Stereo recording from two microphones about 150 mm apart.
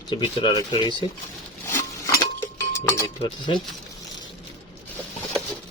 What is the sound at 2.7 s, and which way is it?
Cutlery, 20° left (ahead or behind).